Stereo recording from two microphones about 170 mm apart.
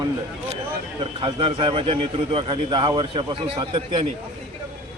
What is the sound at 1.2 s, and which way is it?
A man's voice, 30° right (ahead or behind).